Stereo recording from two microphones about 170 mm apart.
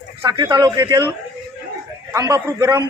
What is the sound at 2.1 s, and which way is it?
Speech, 20° right (ahead or behind).